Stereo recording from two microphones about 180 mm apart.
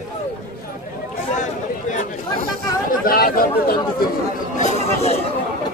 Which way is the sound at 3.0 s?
55° left (ahead or behind).